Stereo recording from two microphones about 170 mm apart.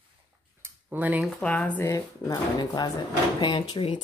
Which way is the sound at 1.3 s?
5° left (ahead or behind).